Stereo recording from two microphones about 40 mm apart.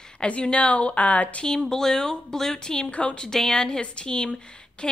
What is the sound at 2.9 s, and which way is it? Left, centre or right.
Speech, left.